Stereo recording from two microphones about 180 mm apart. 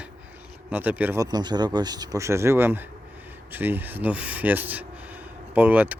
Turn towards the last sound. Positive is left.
turn(degrees=-10)  # may be behind; listen again after turning